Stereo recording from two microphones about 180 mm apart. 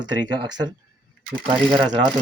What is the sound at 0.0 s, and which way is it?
Speech, 25° right (ahead or behind).